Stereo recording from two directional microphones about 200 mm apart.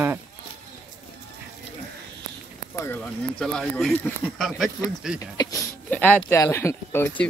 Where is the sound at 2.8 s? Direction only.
10° left (ahead or behind).